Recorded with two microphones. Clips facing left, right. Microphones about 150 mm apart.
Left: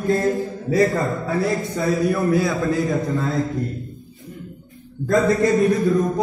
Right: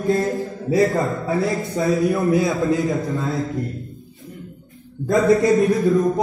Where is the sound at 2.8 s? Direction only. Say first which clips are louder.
Even; centre (ahead or behind).